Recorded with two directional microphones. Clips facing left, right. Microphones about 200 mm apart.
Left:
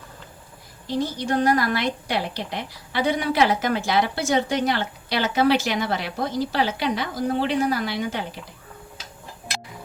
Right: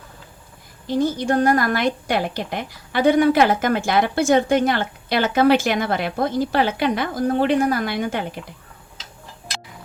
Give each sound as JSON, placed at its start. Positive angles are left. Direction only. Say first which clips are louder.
{"t": 0.9, "sound": "a woman's voice", "louder": "right 5 dB", "side_deg": -50}